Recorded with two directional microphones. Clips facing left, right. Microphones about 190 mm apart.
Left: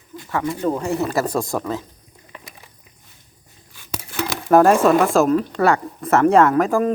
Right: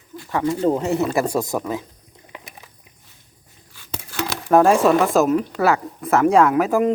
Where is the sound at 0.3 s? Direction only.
20° right (ahead or behind).